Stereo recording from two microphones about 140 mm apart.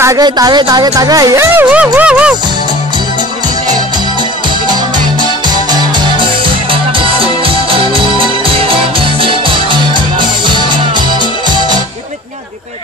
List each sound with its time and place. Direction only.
0.0 s speech: 25° right (ahead or behind)
2.0 s speech: 5° right (ahead or behind)
5.7 s music: 35° right (ahead or behind)